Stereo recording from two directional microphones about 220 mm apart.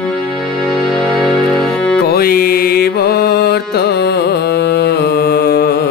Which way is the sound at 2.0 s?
45° left (ahead or behind).